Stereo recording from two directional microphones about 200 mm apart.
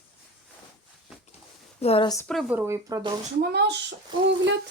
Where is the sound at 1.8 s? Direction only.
30° left (ahead or behind).